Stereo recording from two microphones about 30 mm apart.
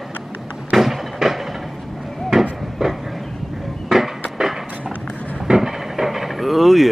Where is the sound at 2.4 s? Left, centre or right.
Centre.